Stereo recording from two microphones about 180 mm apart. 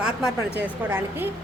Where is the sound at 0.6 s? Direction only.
10° right (ahead or behind).